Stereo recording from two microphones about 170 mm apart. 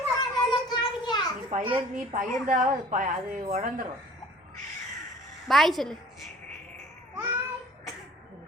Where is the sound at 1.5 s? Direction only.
45° right (ahead or behind).